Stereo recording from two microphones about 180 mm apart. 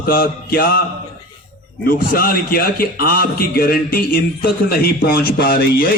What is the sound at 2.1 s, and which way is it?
Speech, 55° left (ahead or behind).